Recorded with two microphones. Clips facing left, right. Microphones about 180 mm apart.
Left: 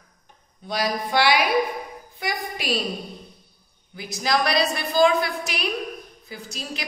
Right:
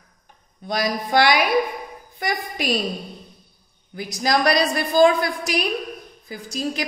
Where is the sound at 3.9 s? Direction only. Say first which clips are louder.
Right 3 dB; 45° right (ahead or behind).